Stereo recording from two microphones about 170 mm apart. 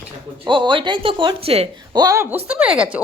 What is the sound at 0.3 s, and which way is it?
Speech, 30° right (ahead or behind).